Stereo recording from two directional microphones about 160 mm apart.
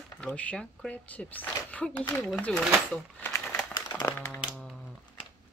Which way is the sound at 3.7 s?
25° left (ahead or behind).